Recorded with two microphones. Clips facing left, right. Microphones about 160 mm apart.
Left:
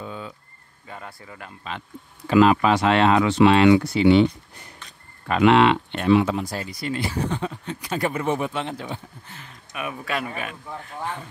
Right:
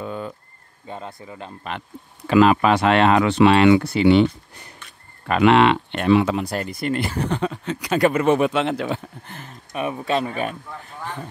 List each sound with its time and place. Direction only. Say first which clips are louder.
0.0 s a sound: right 5 dB; 55° right (ahead or behind)
0.8 s speech: right 5 dB; 25° right (ahead or behind)
2.2 s speech: right 1 dB; 70° right (ahead or behind)
5.3 s speech: right 1 dB; 60° right (ahead or behind); by 9.0 s 85° right
9.3 s speech: right 5 dB; 45° right (ahead or behind)
9.8 s speech: right 6 dB; 30° right (ahead or behind)